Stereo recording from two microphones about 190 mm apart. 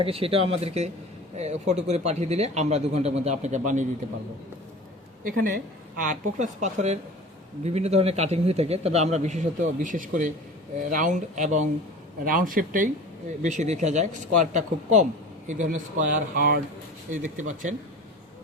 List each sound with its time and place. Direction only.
0.0 s a man's voice: 30° right (ahead or behind)
5.2 s a man's voice: 50° right (ahead or behind)